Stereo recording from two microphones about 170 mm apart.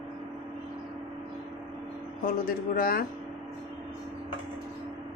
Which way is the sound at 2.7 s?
55° left (ahead or behind).